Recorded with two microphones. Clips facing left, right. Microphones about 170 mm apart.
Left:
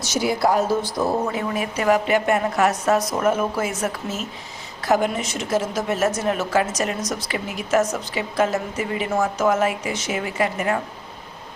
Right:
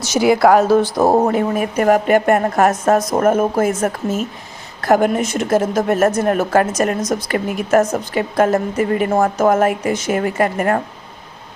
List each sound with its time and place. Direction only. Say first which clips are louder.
0.1 s speech: right 8 dB; 85° right
1.1 s a woman's voice: right 8 dB; 55° right (ahead or behind)